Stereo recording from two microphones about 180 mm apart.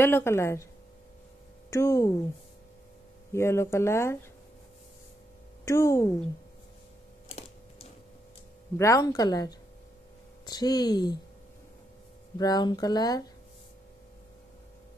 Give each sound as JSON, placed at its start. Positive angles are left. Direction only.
{"t": 0.0, "sound": "speech", "side_deg": 15}
{"t": 1.7, "sound": "speech", "side_deg": 15}
{"t": 3.3, "sound": "speech", "side_deg": 15}
{"t": 5.7, "sound": "speech", "side_deg": 15}
{"t": 8.7, "sound": "speech", "side_deg": 15}
{"t": 12.4, "sound": "speech", "side_deg": 20}